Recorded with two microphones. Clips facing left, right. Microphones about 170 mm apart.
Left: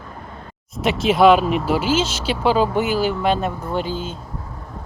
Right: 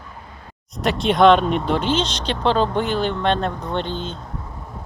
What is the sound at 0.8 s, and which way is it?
Speech, centre (ahead or behind).